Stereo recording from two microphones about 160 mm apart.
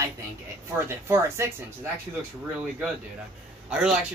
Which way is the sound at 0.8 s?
15° right (ahead or behind).